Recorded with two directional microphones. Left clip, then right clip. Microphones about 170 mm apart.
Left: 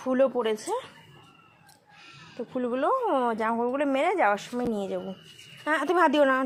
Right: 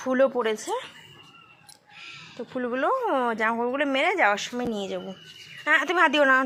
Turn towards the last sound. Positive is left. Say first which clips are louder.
# right 2 dB
turn(degrees=40)  # may be behind; listen again after turning